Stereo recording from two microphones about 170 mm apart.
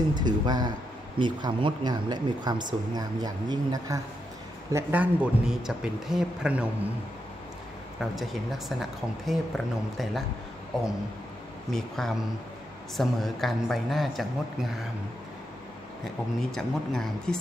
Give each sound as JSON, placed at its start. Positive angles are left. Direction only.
{"t": 0.1, "sound": "speech", "side_deg": -25}
{"t": 4.7, "sound": "a man's voice", "side_deg": -10}
{"t": 8.0, "sound": "speech", "side_deg": 0}
{"t": 12.0, "sound": "speech", "side_deg": 0}
{"t": 16.0, "sound": "speech", "side_deg": 0}